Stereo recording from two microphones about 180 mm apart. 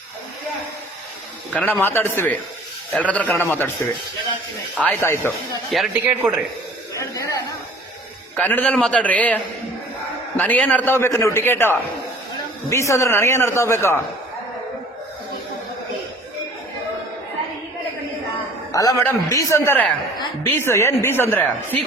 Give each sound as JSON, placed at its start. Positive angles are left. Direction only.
{"t": 1.5, "sound": "a man's voice", "side_deg": 10}
{"t": 4.9, "sound": "a man's voice", "side_deg": 15}
{"t": 5.7, "sound": "speech", "side_deg": 0}
{"t": 7.0, "sound": "a man's voice", "side_deg": 20}
{"t": 8.4, "sound": "a man's voice", "side_deg": 10}
{"t": 18.7, "sound": "a man's voice", "side_deg": 20}